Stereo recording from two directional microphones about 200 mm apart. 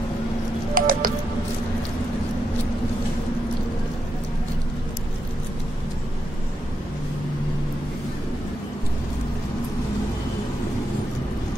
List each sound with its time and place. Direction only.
0.7 s music: 45° right (ahead or behind)